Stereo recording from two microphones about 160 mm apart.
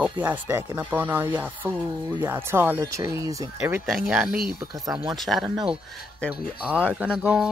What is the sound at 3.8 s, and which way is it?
Speech, centre (ahead or behind).